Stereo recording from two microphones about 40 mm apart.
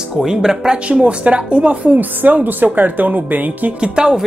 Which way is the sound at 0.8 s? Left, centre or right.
Right.